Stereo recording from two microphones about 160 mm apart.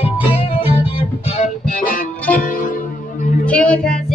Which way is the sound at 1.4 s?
60° left (ahead or behind).